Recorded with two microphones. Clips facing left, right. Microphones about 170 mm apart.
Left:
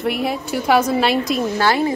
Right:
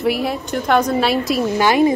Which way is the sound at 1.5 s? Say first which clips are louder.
Right 5 dB; 20° right (ahead or behind).